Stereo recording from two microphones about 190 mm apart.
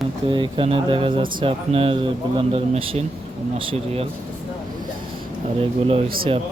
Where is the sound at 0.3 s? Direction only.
25° right (ahead or behind).